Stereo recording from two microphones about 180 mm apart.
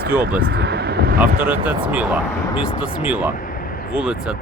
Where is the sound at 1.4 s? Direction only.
10° right (ahead or behind).